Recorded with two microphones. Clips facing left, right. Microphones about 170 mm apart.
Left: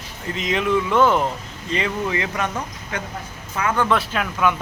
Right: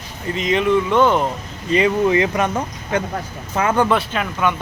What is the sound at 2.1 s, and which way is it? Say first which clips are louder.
Speech: right 7 dB; 20° right (ahead or behind).